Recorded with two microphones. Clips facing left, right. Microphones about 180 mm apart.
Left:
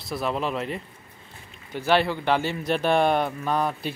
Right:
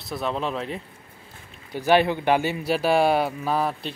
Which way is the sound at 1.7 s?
15° right (ahead or behind).